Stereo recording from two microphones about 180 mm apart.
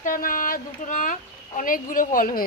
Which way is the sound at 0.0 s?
50° left (ahead or behind).